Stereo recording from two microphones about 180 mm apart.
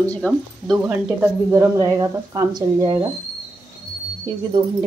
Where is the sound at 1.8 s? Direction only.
20° right (ahead or behind).